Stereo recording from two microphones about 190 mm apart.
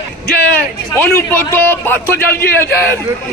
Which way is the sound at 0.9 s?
10° left (ahead or behind).